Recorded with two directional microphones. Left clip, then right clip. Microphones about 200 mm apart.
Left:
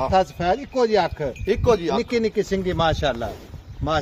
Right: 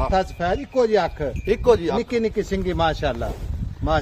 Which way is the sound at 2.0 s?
30° left (ahead or behind).